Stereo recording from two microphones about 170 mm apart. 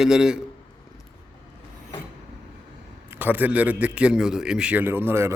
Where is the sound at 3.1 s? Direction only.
10° right (ahead or behind).